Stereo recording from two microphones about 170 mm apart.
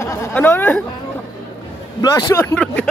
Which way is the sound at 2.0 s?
20° left (ahead or behind).